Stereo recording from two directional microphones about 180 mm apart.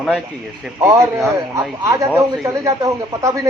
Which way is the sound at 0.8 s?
15° right (ahead or behind).